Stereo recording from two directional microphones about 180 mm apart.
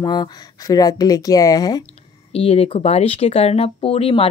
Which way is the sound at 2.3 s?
35° left (ahead or behind).